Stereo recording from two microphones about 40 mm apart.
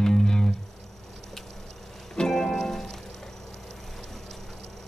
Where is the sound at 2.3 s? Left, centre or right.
Centre.